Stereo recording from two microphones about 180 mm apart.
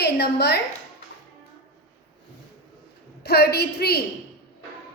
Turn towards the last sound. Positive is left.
turn(degrees=60)  # may be behind; listen again after turning